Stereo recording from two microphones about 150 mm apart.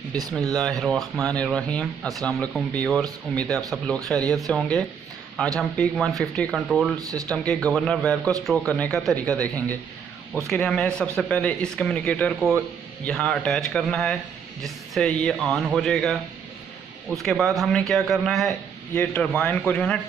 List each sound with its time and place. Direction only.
0.6 s speech: centre (ahead or behind)
7.0 s speech: 25° right (ahead or behind)
7.3 s speech: 5° left (ahead or behind)